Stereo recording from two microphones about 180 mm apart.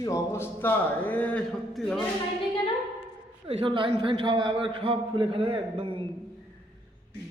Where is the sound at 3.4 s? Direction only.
30° right (ahead or behind).